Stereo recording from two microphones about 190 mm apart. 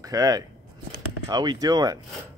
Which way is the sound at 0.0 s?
20° right (ahead or behind).